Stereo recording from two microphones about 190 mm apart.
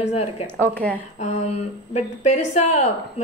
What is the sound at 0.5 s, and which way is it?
Speech, 10° left (ahead or behind).